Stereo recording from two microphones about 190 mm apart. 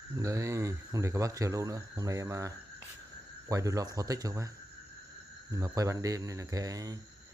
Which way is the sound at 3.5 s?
15° right (ahead or behind).